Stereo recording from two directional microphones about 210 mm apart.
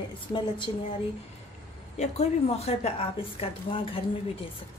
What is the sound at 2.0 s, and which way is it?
A woman's voice, 30° left (ahead or behind).